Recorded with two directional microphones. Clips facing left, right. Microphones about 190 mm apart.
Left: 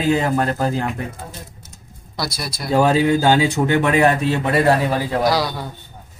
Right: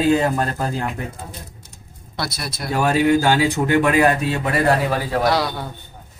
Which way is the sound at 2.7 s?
25° left (ahead or behind).